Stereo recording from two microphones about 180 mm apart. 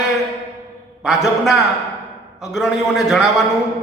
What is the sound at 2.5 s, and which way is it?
Speech, centre (ahead or behind).